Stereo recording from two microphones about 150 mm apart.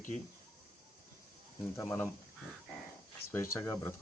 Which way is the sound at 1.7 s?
10° left (ahead or behind).